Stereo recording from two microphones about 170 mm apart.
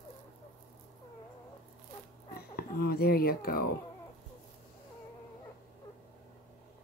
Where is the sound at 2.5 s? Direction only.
65° left (ahead or behind).